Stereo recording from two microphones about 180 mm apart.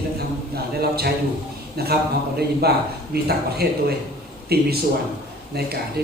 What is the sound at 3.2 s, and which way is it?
Speech, 60° right (ahead or behind).